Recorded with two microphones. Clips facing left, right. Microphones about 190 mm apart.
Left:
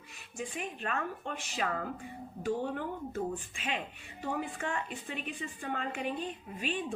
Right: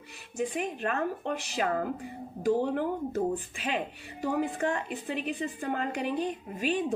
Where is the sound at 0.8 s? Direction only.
40° right (ahead or behind).